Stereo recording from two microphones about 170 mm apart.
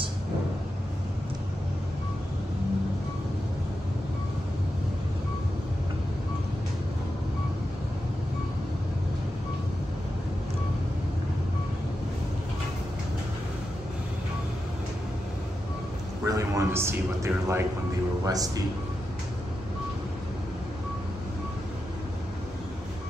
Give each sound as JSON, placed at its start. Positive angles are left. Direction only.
{"t": 16.3, "sound": "a man's voice", "side_deg": -20}